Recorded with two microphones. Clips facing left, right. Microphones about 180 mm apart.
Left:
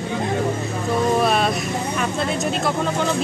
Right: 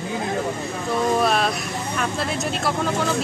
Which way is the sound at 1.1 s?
Centre (ahead or behind).